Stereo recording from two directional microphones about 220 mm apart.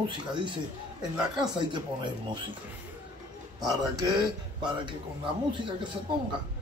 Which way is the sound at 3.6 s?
15° right (ahead or behind).